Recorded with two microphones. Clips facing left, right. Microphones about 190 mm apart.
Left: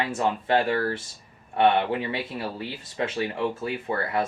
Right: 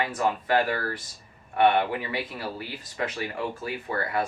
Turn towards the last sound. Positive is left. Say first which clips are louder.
# left 2 dB
turn(degrees=25)  # may be behind; listen again after turning